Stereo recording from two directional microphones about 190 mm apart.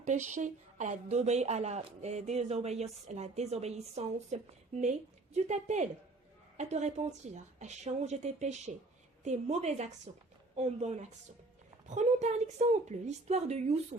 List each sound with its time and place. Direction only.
0.0 s speech: 40° right (ahead or behind)